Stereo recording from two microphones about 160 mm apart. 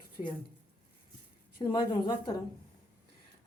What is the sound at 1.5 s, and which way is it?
Speech, 30° left (ahead or behind).